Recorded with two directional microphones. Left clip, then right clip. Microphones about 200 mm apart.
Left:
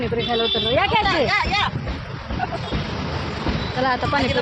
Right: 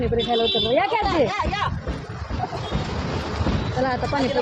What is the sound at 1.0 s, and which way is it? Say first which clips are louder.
Speech: left 2 dB; 20° right (ahead or behind).